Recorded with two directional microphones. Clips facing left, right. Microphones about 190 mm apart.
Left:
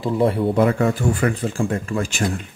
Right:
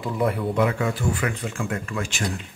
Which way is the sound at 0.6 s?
40° left (ahead or behind).